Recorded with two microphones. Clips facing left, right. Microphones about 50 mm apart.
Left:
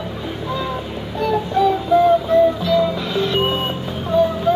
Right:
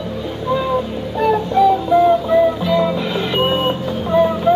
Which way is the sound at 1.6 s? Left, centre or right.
Centre.